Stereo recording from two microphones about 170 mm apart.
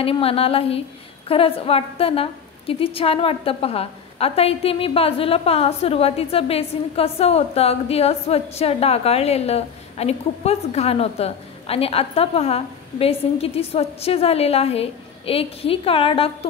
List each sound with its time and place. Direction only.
0.0 s a woman's voice: 35° left (ahead or behind)